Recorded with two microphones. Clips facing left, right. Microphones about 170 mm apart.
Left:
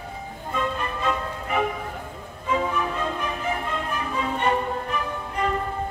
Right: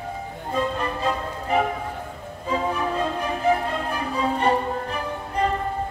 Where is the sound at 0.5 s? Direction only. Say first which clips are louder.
Right 3 dB; 35° right (ahead or behind).